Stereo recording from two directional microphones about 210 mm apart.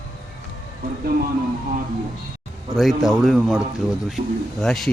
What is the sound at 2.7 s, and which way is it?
Speech, centre (ahead or behind).